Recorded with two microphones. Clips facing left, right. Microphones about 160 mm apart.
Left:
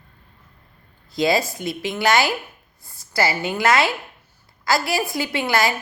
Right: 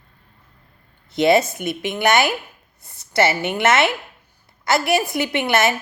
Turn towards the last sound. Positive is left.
turn(degrees=-20)  # may be behind; listen again after turning